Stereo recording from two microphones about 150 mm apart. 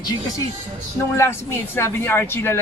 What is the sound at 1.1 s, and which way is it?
Speech, 15° left (ahead or behind).